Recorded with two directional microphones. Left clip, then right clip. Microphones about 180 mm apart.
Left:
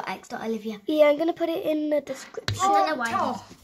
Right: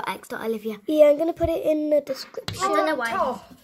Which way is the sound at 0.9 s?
15° right (ahead or behind).